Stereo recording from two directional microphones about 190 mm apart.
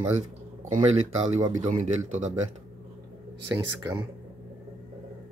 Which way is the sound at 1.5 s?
40° right (ahead or behind).